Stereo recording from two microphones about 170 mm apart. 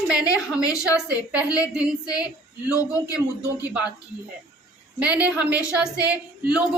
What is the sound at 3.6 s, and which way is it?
Speech, 5° right (ahead or behind).